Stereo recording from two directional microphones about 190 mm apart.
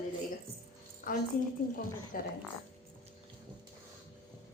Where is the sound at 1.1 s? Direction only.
45° left (ahead or behind).